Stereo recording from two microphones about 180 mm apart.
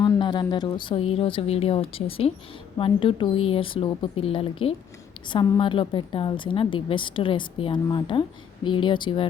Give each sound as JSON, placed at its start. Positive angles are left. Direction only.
{"t": 0.0, "sound": "a woman's voice", "side_deg": 20}